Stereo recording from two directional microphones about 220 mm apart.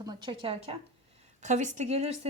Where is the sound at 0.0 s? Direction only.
20° right (ahead or behind).